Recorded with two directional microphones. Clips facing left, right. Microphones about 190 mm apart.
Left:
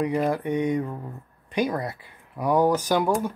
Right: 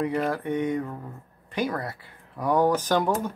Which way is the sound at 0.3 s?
15° left (ahead or behind).